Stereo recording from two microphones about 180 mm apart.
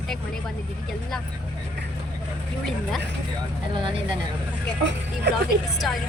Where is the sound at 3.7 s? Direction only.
25° right (ahead or behind).